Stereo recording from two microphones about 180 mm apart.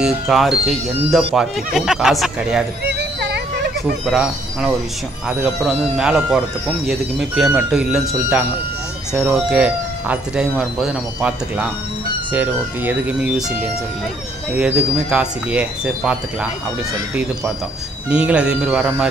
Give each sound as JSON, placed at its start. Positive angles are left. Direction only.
{"t": 0.0, "sound": "speech", "side_deg": 0}
{"t": 2.8, "sound": "music", "side_deg": -65}
{"t": 4.0, "sound": "speech", "side_deg": -5}
{"t": 18.1, "sound": "speech", "side_deg": -5}